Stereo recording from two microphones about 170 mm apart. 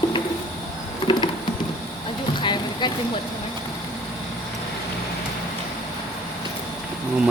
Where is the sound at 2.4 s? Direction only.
25° left (ahead or behind).